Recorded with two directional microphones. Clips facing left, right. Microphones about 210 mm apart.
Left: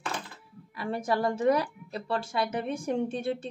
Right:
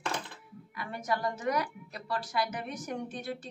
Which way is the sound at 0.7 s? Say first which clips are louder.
Left 5 dB; 30° left (ahead or behind).